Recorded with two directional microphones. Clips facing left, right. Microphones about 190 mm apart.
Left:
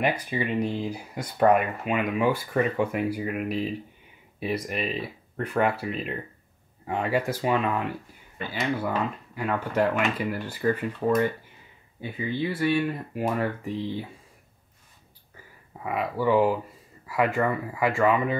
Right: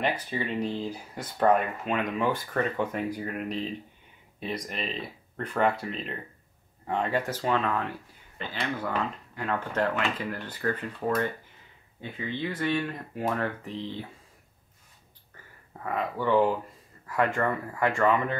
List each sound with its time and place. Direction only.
0.2 s speech: 15° left (ahead or behind)
15.8 s speech: 10° left (ahead or behind)